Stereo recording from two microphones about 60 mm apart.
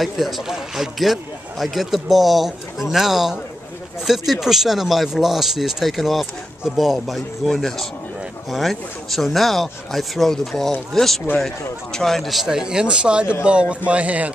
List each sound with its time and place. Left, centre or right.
0.0 s speech: centre; by 14.3 s right